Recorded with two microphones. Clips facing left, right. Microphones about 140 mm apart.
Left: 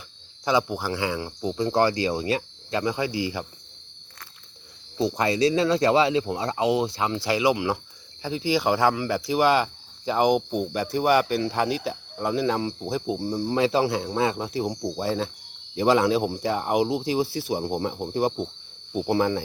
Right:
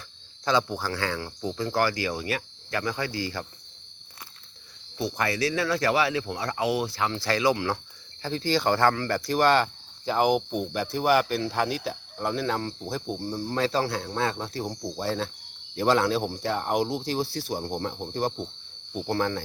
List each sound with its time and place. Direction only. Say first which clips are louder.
0.4 s speech: left 2 dB; 15° left (ahead or behind)
4.9 s speech: left 5 dB; 20° left (ahead or behind)